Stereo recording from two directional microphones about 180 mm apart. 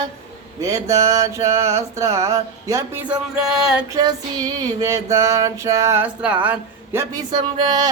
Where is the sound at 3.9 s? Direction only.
20° right (ahead or behind).